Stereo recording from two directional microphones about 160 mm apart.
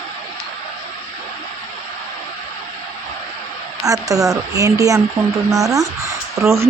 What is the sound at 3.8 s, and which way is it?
A woman's voice, 20° right (ahead or behind).